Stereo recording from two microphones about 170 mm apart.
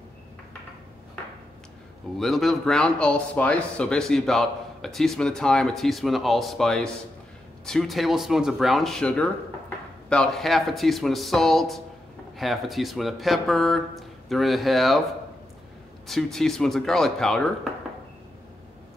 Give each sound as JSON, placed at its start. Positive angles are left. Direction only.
{"t": 2.1, "sound": "speech", "side_deg": 0}
{"t": 16.1, "sound": "speech", "side_deg": 0}